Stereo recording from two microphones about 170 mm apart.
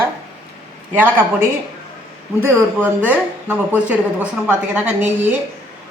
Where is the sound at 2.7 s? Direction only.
10° right (ahead or behind).